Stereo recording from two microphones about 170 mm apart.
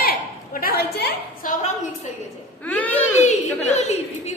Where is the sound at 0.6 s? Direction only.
65° left (ahead or behind).